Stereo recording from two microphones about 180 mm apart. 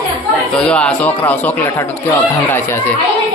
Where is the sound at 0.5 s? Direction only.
5° left (ahead or behind).